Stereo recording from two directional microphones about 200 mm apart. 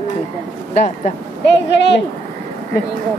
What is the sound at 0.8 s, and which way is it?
Speech, 35° left (ahead or behind).